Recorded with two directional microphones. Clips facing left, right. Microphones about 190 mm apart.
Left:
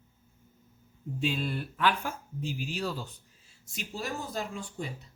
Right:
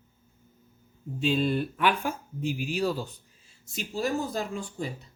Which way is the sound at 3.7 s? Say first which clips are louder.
Right 7 dB; 40° right (ahead or behind).